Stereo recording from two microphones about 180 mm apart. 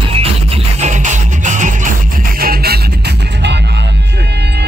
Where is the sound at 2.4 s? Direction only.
60° right (ahead or behind).